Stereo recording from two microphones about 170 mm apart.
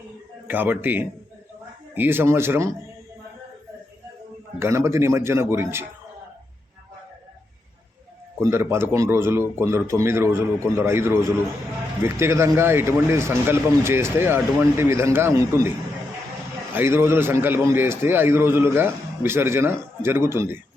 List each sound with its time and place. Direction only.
0.4 s a man's voice: 10° right (ahead or behind)
4.6 s a man's voice: 15° right (ahead or behind)
8.4 s a man's voice: 15° right (ahead or behind)
16.7 s a man's voice: 15° right (ahead or behind)